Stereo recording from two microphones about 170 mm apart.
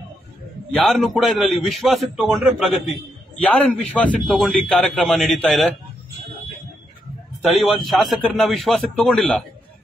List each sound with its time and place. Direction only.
0.7 s a man's voice: centre (ahead or behind)
7.5 s a man's voice: centre (ahead or behind)